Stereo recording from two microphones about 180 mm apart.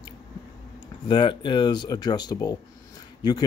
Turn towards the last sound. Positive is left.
turn(degrees=20)  # may be behind; listen again after turning